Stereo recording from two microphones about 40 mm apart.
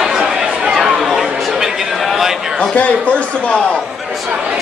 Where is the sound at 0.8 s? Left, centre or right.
Centre.